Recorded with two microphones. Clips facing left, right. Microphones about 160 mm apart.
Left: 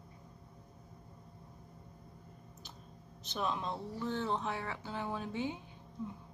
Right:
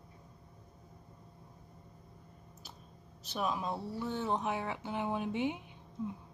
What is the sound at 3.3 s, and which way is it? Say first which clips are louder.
Speech: right 2 dB; 5° right (ahead or behind).